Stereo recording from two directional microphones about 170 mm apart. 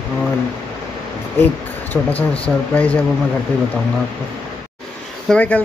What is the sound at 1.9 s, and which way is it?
Speech, 10° left (ahead or behind).